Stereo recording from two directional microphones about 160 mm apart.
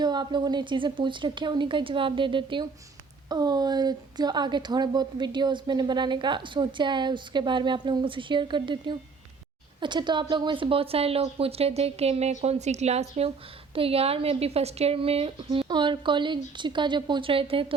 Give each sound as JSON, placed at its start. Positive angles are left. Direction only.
{"t": 0.0, "sound": "a woman's voice", "side_deg": -25}